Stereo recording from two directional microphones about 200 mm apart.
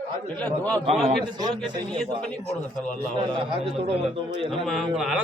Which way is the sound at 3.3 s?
25° right (ahead or behind).